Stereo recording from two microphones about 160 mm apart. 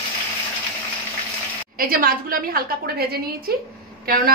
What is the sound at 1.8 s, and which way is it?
A woman's voice, 65° right (ahead or behind).